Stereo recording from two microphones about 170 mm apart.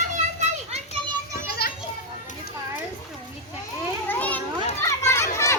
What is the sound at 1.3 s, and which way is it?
Children playing, 65° left (ahead or behind).